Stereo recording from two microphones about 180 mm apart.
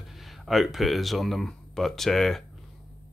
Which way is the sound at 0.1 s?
Centre (ahead or behind).